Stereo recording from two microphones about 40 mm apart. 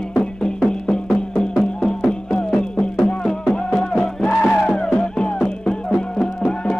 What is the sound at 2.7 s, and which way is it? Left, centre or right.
Music, left.